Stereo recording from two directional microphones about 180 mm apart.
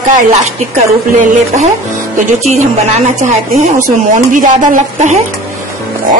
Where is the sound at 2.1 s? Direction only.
40° right (ahead or behind).